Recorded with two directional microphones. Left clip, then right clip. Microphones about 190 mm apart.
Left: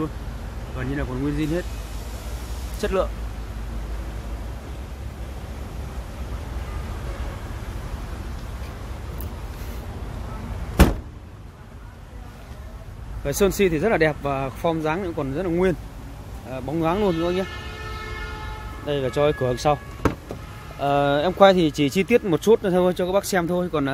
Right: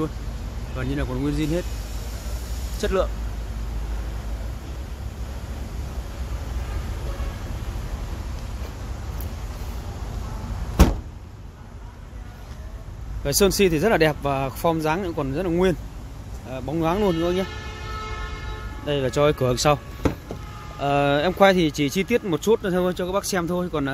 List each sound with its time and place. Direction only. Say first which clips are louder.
0.7 s speech: even; 10° right (ahead or behind)
2.8 s speech: even; centre (ahead or behind)
13.2 s speech: right 1 dB; 5° right (ahead or behind)
18.9 s speech: right 1 dB; 5° right (ahead or behind)
20.8 s speech: even; centre (ahead or behind)